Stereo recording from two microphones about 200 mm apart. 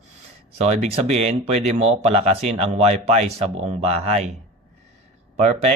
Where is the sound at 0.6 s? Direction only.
30° right (ahead or behind).